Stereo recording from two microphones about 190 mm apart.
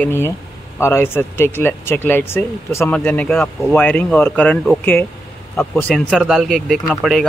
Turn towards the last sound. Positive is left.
turn(degrees=0)  # may be behind; listen again after turning